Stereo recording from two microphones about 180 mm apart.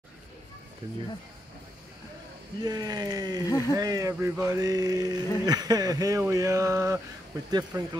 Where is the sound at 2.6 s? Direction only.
20° right (ahead or behind).